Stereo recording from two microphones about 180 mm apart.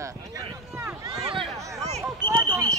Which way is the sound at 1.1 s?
30° right (ahead or behind).